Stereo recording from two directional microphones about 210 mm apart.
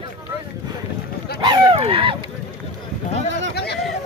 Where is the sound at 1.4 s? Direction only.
25° right (ahead or behind).